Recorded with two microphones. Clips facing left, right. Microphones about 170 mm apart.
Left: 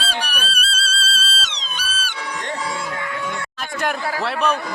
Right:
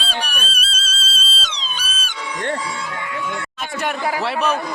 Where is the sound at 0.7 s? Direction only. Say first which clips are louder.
Left 4 dB; 70° left (ahead or behind).